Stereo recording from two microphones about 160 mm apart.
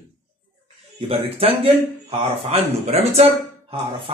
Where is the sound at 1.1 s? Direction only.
35° right (ahead or behind).